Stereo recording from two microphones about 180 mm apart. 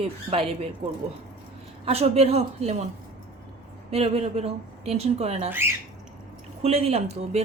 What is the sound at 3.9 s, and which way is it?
A woman's voice, 35° right (ahead or behind).